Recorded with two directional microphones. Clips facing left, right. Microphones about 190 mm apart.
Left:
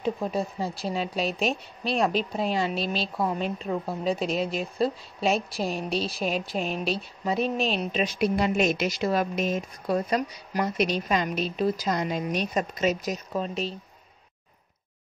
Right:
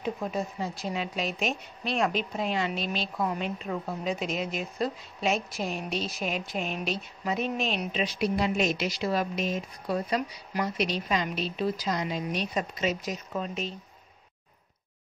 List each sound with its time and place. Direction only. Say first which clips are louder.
0.0 s a woman's voice: left 3 dB; 30° left (ahead or behind)
8.0 s speech: left 3 dB; 50° left (ahead or behind); by 13.7 s 35° left (ahead or behind)